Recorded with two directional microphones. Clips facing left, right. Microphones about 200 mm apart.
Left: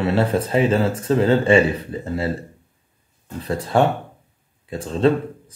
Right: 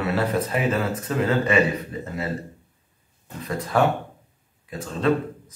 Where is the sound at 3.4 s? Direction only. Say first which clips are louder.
Left 3 dB; 30° left (ahead or behind).